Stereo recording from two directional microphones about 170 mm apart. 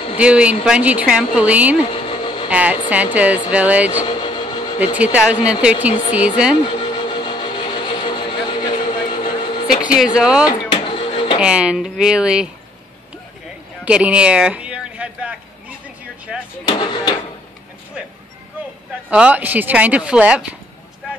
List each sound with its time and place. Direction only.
0.2 s speech: 5° right (ahead or behind)
2.0 s vehicle: 30° left (ahead or behind)
2.5 s speech: 10° right (ahead or behind)
4.0 s vehicle: 30° left (ahead or behind)
4.9 s speech: 10° right (ahead or behind)
6.6 s vehicle: 30° left (ahead or behind)
10.1 s speech: 5° right (ahead or behind)
10.4 s a sound: 25° left (ahead or behind)
11.3 s speech: 5° right (ahead or behind)
13.8 s a sound: 5° right (ahead or behind)
16.3 s speech: centre (ahead or behind)
16.6 s speech: 25° left (ahead or behind)
19.0 s speech: 5° right (ahead or behind)